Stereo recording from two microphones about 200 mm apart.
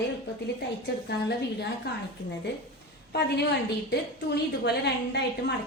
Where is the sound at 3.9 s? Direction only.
55° left (ahead or behind).